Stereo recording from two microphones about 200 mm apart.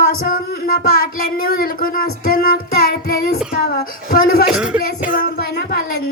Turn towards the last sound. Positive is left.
turn(degrees=50)  # may be behind; listen again after turning